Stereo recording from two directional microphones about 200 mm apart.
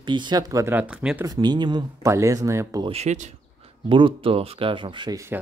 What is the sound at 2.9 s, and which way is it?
Speech, 35° right (ahead or behind).